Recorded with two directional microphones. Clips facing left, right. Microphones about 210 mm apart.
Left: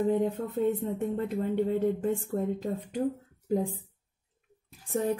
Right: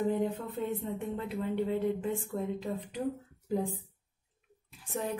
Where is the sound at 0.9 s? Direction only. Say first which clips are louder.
Left 5 dB; 45° left (ahead or behind).